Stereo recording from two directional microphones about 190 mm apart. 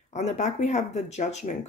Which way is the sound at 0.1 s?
35° left (ahead or behind).